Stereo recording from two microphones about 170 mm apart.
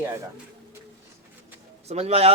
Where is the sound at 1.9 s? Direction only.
40° right (ahead or behind).